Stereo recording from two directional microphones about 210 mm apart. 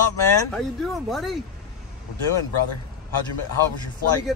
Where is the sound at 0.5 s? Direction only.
Centre (ahead or behind).